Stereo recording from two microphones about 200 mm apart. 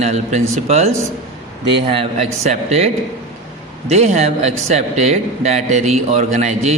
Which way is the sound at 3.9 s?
35° right (ahead or behind).